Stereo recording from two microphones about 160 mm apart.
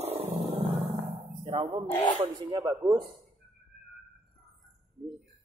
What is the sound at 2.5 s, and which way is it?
Speech, 25° right (ahead or behind).